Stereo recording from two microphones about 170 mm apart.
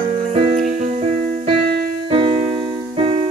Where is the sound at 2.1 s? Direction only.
35° right (ahead or behind).